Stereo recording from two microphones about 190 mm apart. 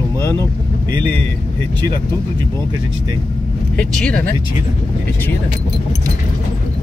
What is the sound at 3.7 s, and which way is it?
Speech, 5° left (ahead or behind).